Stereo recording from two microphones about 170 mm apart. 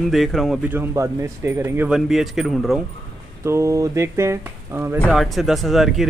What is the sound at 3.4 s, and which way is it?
Speech, 15° right (ahead or behind).